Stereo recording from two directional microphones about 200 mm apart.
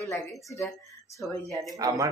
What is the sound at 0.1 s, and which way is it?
Speech, 15° left (ahead or behind).